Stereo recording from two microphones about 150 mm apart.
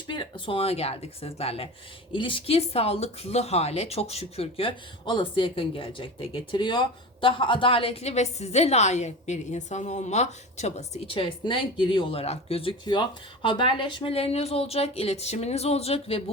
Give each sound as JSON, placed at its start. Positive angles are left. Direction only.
{"t": 0.1, "sound": "speech", "side_deg": 35}